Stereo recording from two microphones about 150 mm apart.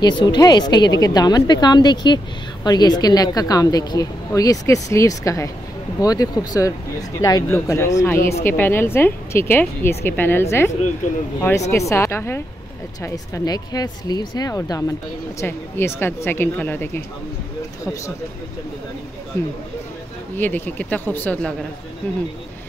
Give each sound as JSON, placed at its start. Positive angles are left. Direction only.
{"t": 0.0, "sound": "a woman's voice", "side_deg": 30}
{"t": 11.7, "sound": "a woman's voice", "side_deg": 20}
{"t": 20.3, "sound": "a woman's voice", "side_deg": 10}